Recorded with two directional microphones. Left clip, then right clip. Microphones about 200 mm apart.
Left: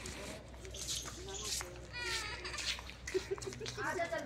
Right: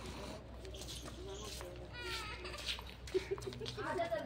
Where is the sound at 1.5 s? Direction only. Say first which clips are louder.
Left 5 dB; 55° right (ahead or behind).